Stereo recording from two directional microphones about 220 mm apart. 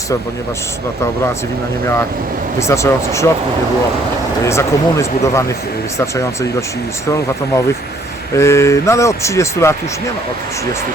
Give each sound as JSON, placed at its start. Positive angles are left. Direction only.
{"t": 2.6, "sound": "speech", "side_deg": 15}
{"t": 4.4, "sound": "speech", "side_deg": 15}
{"t": 8.4, "sound": "speech", "side_deg": 10}